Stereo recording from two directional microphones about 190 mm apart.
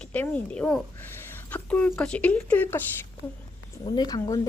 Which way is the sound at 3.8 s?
20° left (ahead or behind).